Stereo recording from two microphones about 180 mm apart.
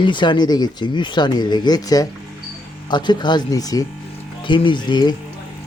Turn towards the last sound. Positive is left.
turn(degrees=25)  # may be behind; listen again after turning